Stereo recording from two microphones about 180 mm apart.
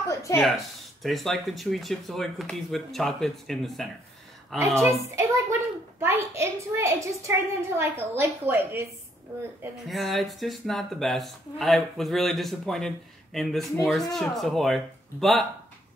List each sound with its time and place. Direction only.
0.1 s a sound: 15° left (ahead or behind)
0.4 s speech: centre (ahead or behind)
4.6 s a child's voice: 15° right (ahead or behind)
9.8 s speech: centre (ahead or behind)